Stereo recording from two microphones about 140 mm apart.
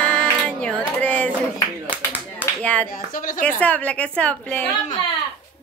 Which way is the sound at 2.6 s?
10° left (ahead or behind).